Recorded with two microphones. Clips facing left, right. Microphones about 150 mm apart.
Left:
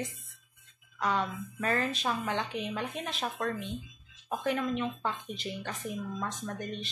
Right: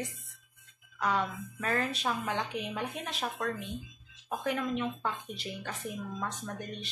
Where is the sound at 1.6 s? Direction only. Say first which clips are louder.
Left 1 dB; 5° right (ahead or behind).